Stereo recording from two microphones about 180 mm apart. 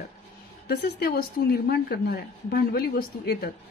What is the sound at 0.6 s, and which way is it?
A woman's voice, 60° left (ahead or behind).